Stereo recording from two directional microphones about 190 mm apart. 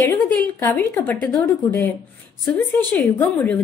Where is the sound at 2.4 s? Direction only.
10° left (ahead or behind).